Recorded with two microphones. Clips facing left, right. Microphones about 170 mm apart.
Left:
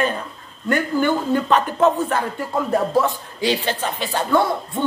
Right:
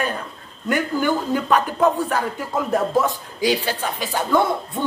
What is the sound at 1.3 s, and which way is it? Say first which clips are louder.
Speech: left 1 dB; 10° right (ahead or behind).